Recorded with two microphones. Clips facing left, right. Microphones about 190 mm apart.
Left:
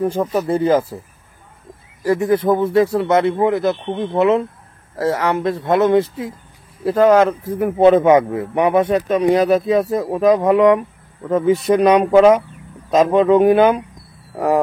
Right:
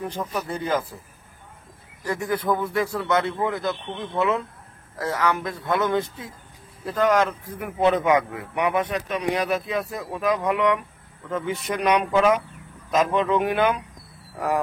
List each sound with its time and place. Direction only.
0.0 s a man's voice: 45° left (ahead or behind)
2.0 s speech: 25° left (ahead or behind)
3.8 s speech: 65° left (ahead or behind)
4.1 s a man's voice: 20° left (ahead or behind); by 10.8 s 45° left (ahead or behind)
10.8 s a man's voice: 30° left (ahead or behind)